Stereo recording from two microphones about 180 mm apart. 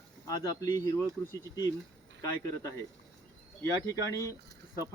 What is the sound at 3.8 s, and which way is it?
Speech, 20° left (ahead or behind).